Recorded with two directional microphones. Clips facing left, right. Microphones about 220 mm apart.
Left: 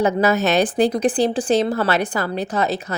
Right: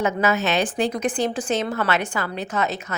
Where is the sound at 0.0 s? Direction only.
35° left (ahead or behind).